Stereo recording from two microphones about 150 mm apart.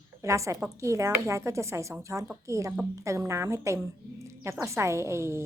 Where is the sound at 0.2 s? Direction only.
20° right (ahead or behind).